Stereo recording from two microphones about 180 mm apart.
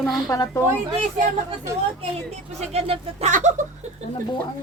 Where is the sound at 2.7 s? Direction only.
35° right (ahead or behind).